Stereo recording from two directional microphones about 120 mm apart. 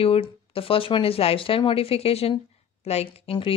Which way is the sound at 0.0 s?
55° left (ahead or behind).